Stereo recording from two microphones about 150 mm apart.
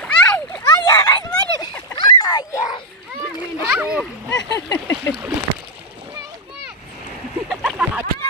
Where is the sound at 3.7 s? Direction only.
5° right (ahead or behind).